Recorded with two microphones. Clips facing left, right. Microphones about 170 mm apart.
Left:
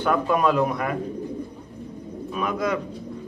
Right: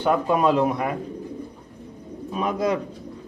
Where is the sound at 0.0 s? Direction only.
25° right (ahead or behind).